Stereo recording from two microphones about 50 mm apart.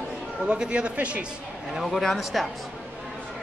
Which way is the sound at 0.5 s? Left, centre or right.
Right.